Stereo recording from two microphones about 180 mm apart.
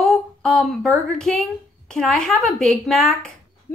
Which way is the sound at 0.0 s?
Centre (ahead or behind).